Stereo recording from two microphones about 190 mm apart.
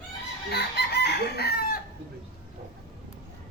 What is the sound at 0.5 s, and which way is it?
Chicken, 60° left (ahead or behind).